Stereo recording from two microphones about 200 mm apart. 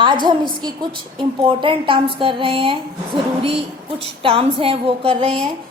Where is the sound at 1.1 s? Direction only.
25° right (ahead or behind).